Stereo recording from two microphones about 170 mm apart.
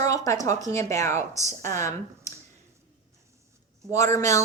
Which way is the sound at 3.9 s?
15° left (ahead or behind).